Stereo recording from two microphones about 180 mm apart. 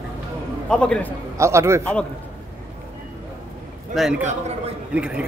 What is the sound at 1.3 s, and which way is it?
Speech, 15° right (ahead or behind).